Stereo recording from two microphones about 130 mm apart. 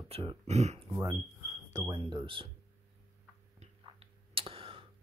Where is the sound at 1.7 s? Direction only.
30° right (ahead or behind).